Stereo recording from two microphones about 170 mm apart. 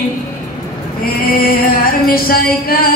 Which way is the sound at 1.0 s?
60° left (ahead or behind).